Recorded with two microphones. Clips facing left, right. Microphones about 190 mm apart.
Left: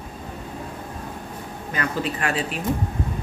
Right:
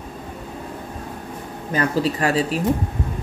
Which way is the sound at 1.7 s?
35° right (ahead or behind).